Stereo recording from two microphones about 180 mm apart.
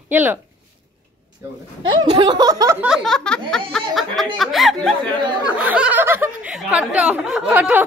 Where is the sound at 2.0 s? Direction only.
25° right (ahead or behind).